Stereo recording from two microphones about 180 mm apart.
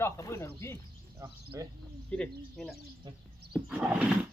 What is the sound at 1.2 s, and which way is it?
Speech, 20° right (ahead or behind).